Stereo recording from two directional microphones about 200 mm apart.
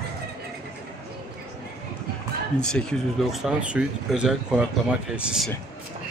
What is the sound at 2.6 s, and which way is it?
Speech, 5° left (ahead or behind).